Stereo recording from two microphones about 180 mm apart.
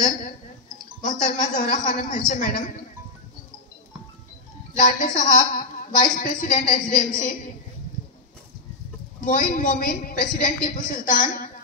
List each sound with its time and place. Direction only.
1.0 s a woman's voice: 45° left (ahead or behind)
4.7 s a woman's voice: 45° left (ahead or behind)
9.2 s a woman's voice: 45° left (ahead or behind)